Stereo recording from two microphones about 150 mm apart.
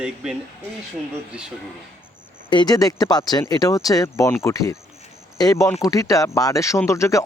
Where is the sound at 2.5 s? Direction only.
30° left (ahead or behind).